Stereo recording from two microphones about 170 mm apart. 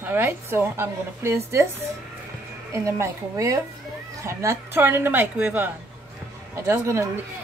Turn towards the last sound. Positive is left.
turn(degrees=-15)  # may be behind; listen again after turning